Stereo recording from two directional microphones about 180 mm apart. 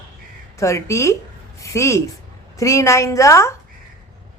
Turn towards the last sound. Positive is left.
turn(degrees=15)  # may be behind; listen again after turning